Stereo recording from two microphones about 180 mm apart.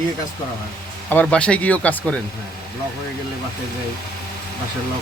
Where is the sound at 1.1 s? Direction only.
5° left (ahead or behind).